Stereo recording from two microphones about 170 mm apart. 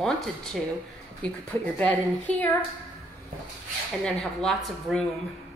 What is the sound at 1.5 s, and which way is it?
Speech, 10° left (ahead or behind).